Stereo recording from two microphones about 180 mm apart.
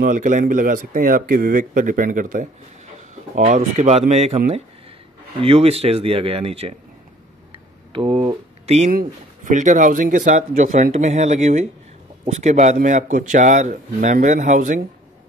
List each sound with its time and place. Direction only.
0.0 s speech: 45° right (ahead or behind)
5.4 s speech: 35° right (ahead or behind)